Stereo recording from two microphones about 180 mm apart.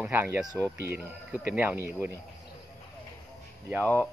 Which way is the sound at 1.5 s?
10° right (ahead or behind).